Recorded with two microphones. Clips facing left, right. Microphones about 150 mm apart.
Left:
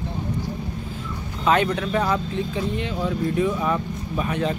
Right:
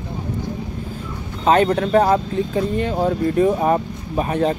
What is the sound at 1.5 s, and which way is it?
Speech, 40° right (ahead or behind).